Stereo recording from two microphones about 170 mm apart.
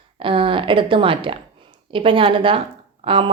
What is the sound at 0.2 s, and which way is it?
A woman's voice, 30° right (ahead or behind).